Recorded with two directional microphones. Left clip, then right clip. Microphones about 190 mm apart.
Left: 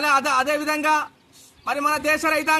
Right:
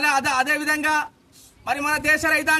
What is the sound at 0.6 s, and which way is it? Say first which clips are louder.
Speech: even; 30° right (ahead or behind).